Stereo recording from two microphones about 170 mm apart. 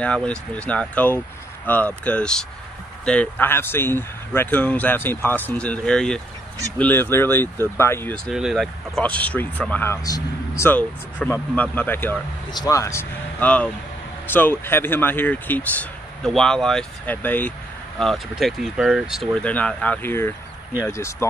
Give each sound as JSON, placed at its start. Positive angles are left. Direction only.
{"t": 0.0, "sound": "speech", "side_deg": 5}
{"t": 8.3, "sound": "speech", "side_deg": -5}
{"t": 19.5, "sound": "speech", "side_deg": 10}